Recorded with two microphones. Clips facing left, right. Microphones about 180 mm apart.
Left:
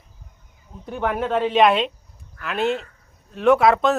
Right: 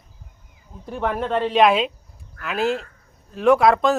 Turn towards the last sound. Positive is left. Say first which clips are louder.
# even
turn(degrees=0)  # may be behind; listen again after turning